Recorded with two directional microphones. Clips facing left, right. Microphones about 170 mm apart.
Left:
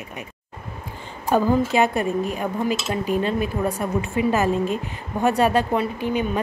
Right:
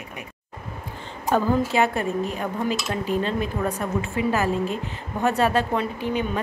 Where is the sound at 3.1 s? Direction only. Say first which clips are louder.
Left 2 dB; 10° left (ahead or behind).